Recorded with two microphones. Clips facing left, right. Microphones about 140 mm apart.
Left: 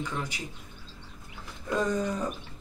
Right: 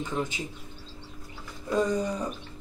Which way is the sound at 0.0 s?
20° right (ahead or behind).